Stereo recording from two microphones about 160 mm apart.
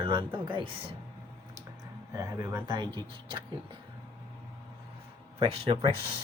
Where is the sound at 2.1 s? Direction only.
20° right (ahead or behind).